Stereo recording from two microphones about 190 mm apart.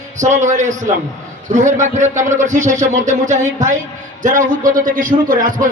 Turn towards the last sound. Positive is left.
turn(degrees=-45)  # may be behind; listen again after turning